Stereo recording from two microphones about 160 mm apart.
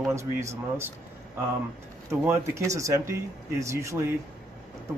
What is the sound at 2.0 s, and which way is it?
Speech, 15° right (ahead or behind).